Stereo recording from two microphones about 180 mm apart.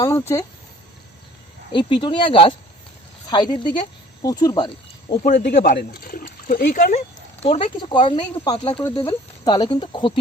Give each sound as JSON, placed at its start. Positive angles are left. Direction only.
{"t": 0.0, "sound": "speech", "side_deg": 15}
{"t": 1.7, "sound": "speech", "side_deg": 25}
{"t": 5.2, "sound": "speech", "side_deg": 50}
{"t": 7.4, "sound": "speech", "side_deg": 30}